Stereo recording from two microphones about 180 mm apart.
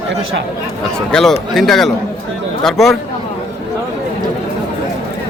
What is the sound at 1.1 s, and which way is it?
A man's voice, centre (ahead or behind).